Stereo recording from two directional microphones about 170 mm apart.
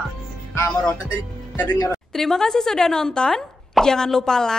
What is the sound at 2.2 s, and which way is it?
Speech, 5° left (ahead or behind).